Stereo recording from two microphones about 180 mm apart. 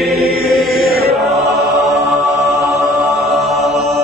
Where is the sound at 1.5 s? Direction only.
Centre (ahead or behind).